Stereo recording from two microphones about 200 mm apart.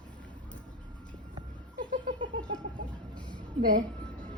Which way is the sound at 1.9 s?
40° right (ahead or behind).